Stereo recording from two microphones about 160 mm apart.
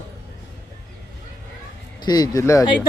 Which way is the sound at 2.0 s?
25° left (ahead or behind).